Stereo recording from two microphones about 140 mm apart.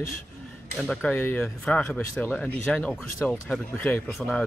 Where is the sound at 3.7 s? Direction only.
15° left (ahead or behind).